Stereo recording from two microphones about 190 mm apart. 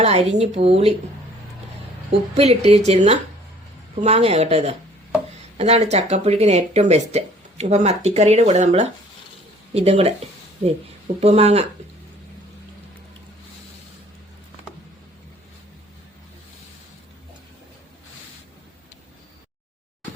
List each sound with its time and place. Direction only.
0.0 s speech: 35° right (ahead or behind)
2.3 s speech: 35° right (ahead or behind)
11.2 s speech: 35° right (ahead or behind)